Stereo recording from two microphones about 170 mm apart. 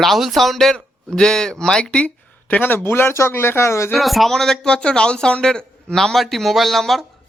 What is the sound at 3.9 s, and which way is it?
Speech, centre (ahead or behind).